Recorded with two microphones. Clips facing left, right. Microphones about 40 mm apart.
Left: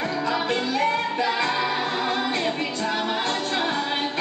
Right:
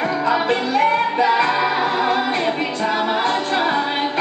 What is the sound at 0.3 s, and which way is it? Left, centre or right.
Music, centre.